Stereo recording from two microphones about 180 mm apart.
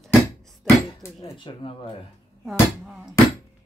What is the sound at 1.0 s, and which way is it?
Speech, 20° left (ahead or behind).